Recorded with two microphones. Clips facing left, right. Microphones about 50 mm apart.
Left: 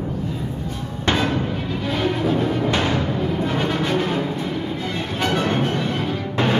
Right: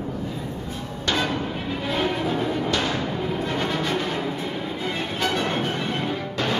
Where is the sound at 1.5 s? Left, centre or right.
Centre.